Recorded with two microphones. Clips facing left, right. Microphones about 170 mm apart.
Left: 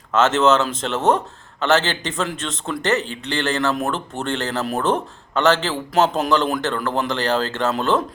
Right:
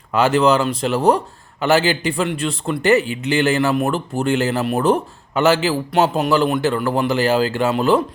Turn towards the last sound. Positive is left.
turn(degrees=0)  # may be behind; listen again after turning